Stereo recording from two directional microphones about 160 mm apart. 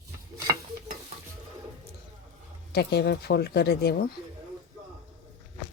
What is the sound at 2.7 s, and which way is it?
Speech, 90° left.